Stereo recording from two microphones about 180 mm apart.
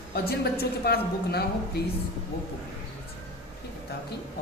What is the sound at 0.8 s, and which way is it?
Speech, 60° left (ahead or behind).